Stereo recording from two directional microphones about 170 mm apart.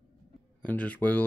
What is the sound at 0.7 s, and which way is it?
Speech, 10° left (ahead or behind).